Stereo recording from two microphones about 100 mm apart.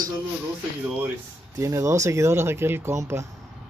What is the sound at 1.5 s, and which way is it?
Speech, 30° right (ahead or behind).